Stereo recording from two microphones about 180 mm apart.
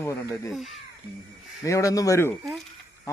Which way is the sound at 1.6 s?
15° left (ahead or behind).